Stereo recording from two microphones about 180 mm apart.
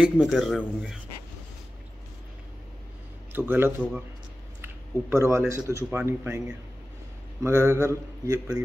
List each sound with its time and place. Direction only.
0.0 s a man's voice: centre (ahead or behind)
3.3 s speech: 10° right (ahead or behind)
5.1 s speech: 15° right (ahead or behind)